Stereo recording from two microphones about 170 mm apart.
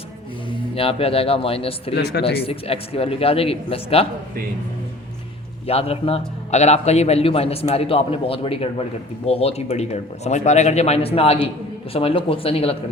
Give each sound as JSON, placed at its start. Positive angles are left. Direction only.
{"t": 0.8, "sound": "a man's voice", "side_deg": 35}
{"t": 2.0, "sound": "speech", "side_deg": 75}
{"t": 2.4, "sound": "a man's voice", "side_deg": 35}
{"t": 5.6, "sound": "a man's voice", "side_deg": 35}